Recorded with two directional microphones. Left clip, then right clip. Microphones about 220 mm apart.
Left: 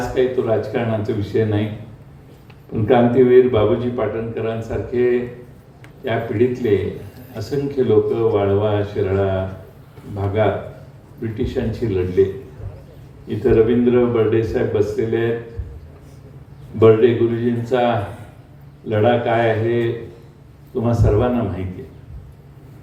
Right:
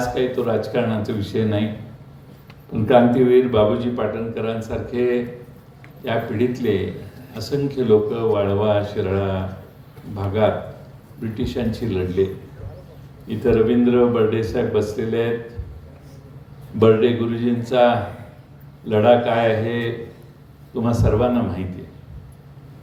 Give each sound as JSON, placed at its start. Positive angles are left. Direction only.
{"t": 0.1, "sound": "speech", "side_deg": -45}
{"t": 2.8, "sound": "speech", "side_deg": -45}
{"t": 11.2, "sound": "speech", "side_deg": -45}
{"t": 13.2, "sound": "speech", "side_deg": -45}
{"t": 16.8, "sound": "speech", "side_deg": -50}